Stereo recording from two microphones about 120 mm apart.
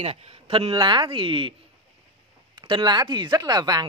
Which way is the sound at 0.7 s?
40° right (ahead or behind).